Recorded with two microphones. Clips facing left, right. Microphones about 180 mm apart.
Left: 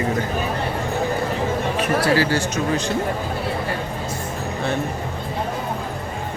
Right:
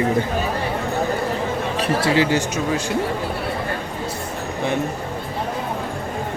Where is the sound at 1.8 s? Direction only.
25° right (ahead or behind).